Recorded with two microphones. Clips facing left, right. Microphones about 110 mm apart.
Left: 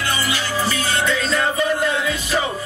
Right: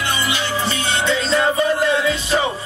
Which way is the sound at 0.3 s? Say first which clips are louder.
Right 1 dB; 25° right (ahead or behind).